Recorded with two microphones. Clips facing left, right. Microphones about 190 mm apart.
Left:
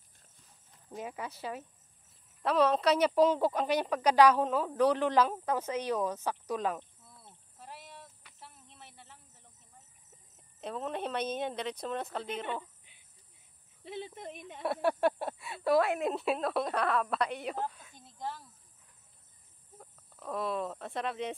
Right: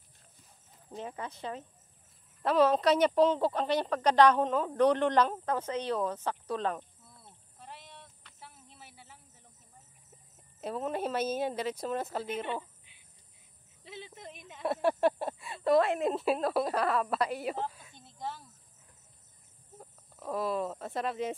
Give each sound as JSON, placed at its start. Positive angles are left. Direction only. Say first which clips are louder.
{"t": 0.9, "sound": "a woman's voice", "louder": "even", "side_deg": 10}
{"t": 6.8, "sound": "cricket", "louder": "right 1 dB", "side_deg": 0}
{"t": 8.4, "sound": "a sound", "louder": "right 1 dB", "side_deg": 0}
{"t": 10.3, "sound": "speech", "louder": "right 3 dB", "side_deg": -5}
{"t": 13.8, "sound": "speech", "louder": "left 5 dB", "side_deg": 55}
{"t": 14.6, "sound": "speech", "louder": "right 1 dB", "side_deg": 0}
{"t": 19.8, "sound": "speech", "louder": "right 2 dB", "side_deg": -5}